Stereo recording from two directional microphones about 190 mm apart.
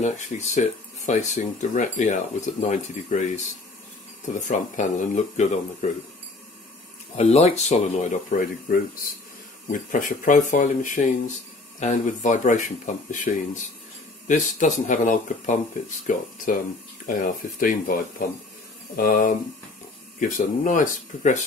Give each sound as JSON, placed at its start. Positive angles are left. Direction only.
{"t": 0.0, "sound": "speech", "side_deg": 40}
{"t": 4.5, "sound": "speech", "side_deg": 40}
{"t": 7.2, "sound": "speech", "side_deg": 35}
{"t": 18.9, "sound": "speech", "side_deg": 45}